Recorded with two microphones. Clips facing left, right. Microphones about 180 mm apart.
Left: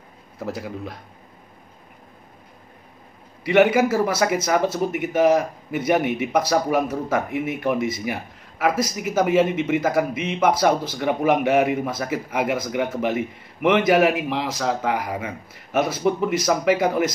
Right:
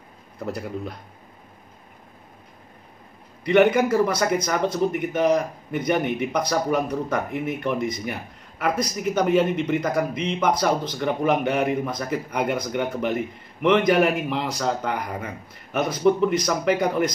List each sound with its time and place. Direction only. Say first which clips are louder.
0.4 s speech: even; centre (ahead or behind)
3.4 s speech: left 1 dB; 5° left (ahead or behind)